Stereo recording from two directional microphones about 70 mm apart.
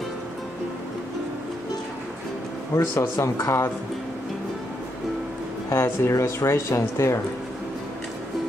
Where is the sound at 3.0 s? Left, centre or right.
Left.